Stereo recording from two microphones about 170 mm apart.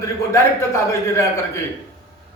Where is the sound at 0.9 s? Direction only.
15° left (ahead or behind).